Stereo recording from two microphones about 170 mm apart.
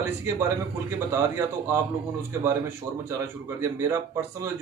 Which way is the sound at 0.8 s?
15° right (ahead or behind).